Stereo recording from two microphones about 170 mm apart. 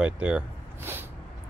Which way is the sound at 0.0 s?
5° right (ahead or behind).